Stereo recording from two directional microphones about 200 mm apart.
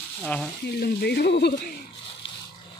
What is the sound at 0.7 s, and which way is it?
Speech, 55° left (ahead or behind).